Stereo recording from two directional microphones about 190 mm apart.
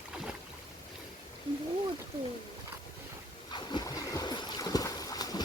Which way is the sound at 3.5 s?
25° left (ahead or behind).